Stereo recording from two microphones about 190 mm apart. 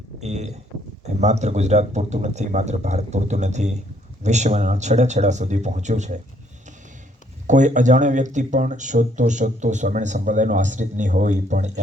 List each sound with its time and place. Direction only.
0.2 s speech: 35° right (ahead or behind)
7.4 s speech: 40° right (ahead or behind)